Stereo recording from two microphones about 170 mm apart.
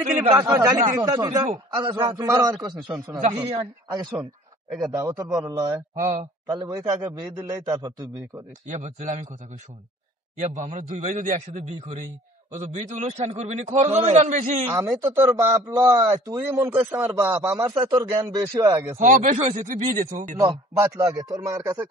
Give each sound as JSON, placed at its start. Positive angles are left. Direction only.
{"t": 0.4, "sound": "a man's voice", "side_deg": -20}
{"t": 4.6, "sound": "a man's voice", "side_deg": 0}
{"t": 4.9, "sound": "a man's voice", "side_deg": -20}
{"t": 5.9, "sound": "a man's voice", "side_deg": -45}
{"t": 6.9, "sound": "a man's voice", "side_deg": -20}
{"t": 8.6, "sound": "a man's voice", "side_deg": -45}
{"t": 10.3, "sound": "a man's voice", "side_deg": -45}
{"t": 14.7, "sound": "a man's voice", "side_deg": -15}
{"t": 18.9, "sound": "a man's voice", "side_deg": -50}
{"t": 20.3, "sound": "a man's voice", "side_deg": -20}